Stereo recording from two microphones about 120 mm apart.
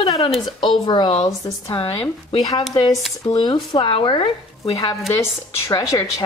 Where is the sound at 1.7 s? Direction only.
50° left (ahead or behind).